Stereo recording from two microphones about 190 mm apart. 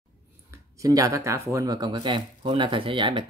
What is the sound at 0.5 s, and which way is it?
Speech, 15° right (ahead or behind).